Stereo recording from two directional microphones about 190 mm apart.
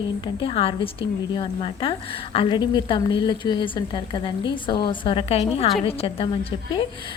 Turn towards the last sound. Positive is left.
turn(degrees=30)  # may be behind; listen again after turning